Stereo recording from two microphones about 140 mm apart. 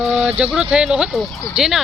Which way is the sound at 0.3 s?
10° right (ahead or behind).